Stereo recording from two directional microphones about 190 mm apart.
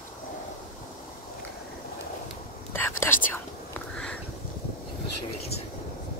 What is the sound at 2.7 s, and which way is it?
Whispering, 10° left (ahead or behind).